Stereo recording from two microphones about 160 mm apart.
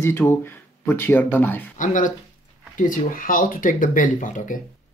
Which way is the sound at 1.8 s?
55° left (ahead or behind).